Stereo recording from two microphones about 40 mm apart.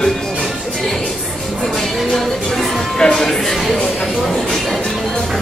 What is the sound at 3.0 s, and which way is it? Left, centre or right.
Speech, centre.